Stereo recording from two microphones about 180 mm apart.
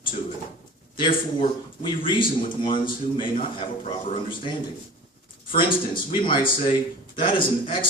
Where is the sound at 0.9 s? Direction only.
25° left (ahead or behind).